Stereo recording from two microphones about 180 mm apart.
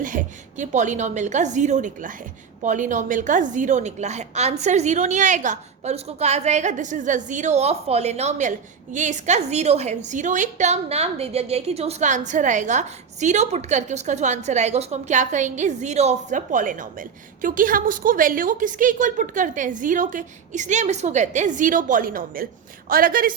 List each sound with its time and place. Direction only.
0.0 s a woman's voice: 45° right (ahead or behind)